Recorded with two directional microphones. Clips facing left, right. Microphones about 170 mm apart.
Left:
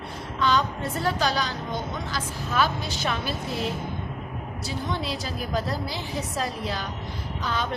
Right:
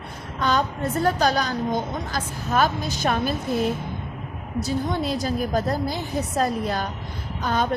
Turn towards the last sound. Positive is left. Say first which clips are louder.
# right 5 dB
turn(degrees=-50)  # may be behind; listen again after turning